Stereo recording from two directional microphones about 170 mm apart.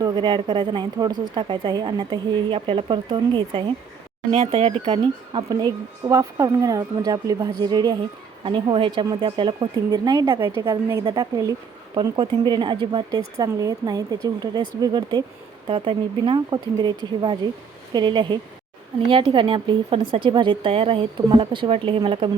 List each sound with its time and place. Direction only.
0.0 s speech: 25° right (ahead or behind)
10.7 s a woman's voice: 15° right (ahead or behind)